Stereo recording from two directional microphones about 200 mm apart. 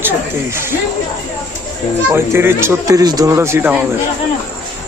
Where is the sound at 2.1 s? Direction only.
10° right (ahead or behind).